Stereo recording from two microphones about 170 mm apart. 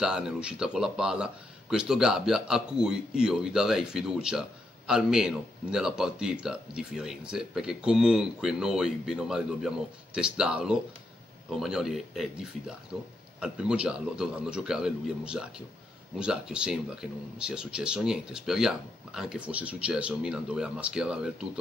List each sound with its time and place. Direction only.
0.0 s speech: 5° right (ahead or behind)